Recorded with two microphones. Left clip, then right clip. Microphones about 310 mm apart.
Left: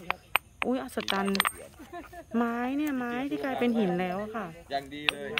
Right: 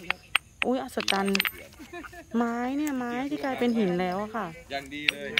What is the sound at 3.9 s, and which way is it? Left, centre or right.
Speech, centre.